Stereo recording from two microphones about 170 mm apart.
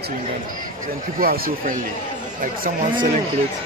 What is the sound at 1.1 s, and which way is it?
Speech, 60° right (ahead or behind).